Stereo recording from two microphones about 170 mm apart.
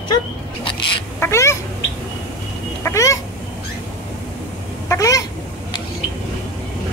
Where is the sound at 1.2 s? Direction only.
15° left (ahead or behind).